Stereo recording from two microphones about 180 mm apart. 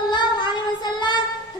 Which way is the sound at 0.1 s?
25° left (ahead or behind).